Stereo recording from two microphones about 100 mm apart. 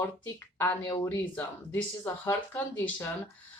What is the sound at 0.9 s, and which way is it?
A woman's voice, 25° left (ahead or behind).